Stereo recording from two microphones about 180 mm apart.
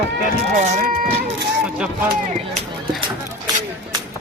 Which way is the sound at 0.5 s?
45° right (ahead or behind).